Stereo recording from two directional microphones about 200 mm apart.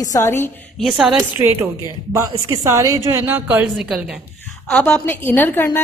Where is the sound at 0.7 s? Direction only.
Centre (ahead or behind).